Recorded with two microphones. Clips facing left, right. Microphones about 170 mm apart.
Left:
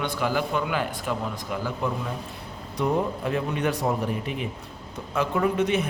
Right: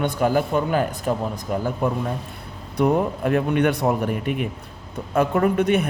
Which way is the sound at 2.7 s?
60° right (ahead or behind).